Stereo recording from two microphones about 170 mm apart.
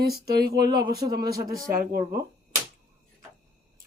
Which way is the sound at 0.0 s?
70° right (ahead or behind).